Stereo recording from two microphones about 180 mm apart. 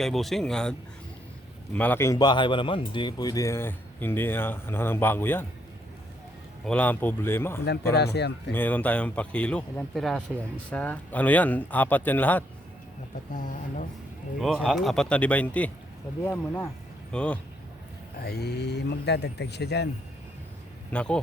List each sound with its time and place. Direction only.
0.0 s speech: centre (ahead or behind)
6.7 s speech: 10° left (ahead or behind)
7.9 s speech: 65° left (ahead or behind)
8.5 s speech: 10° left (ahead or behind)
13.3 s speech: 45° left (ahead or behind)
14.4 s speech: centre (ahead or behind)
18.2 s speech: 60° left (ahead or behind)
20.9 s speech: 5° left (ahead or behind)